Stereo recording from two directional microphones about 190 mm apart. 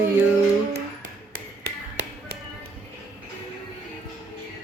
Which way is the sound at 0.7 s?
40° right (ahead or behind).